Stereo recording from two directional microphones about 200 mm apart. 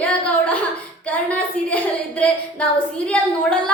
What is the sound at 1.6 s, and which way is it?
A woman's voice, 5° left (ahead or behind).